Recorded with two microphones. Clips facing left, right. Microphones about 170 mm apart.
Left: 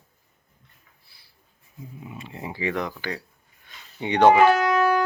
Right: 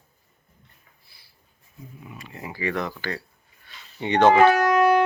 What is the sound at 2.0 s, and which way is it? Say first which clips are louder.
Speech: left 2 dB; 25° left (ahead or behind).